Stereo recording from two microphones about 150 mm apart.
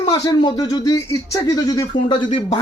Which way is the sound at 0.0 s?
30° left (ahead or behind).